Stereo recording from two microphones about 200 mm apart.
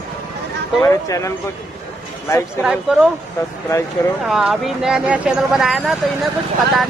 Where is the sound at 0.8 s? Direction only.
15° left (ahead or behind).